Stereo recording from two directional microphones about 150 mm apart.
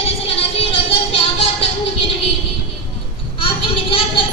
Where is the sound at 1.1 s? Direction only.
40° left (ahead or behind).